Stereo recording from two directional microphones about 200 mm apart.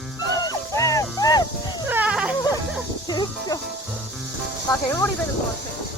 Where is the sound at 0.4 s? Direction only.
15° left (ahead or behind).